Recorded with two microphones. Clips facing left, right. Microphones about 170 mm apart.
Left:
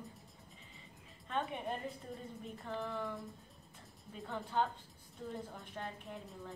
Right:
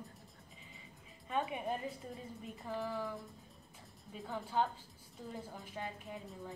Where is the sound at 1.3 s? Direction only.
5° right (ahead or behind).